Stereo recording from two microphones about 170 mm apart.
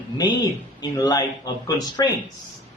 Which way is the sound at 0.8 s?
25° left (ahead or behind).